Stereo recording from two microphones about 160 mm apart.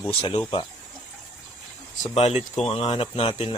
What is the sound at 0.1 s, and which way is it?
Speech, 35° left (ahead or behind).